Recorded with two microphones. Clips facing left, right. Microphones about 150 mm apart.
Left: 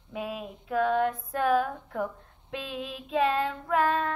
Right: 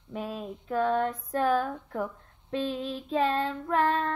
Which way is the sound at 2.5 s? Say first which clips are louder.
Right 5 dB; 35° right (ahead or behind).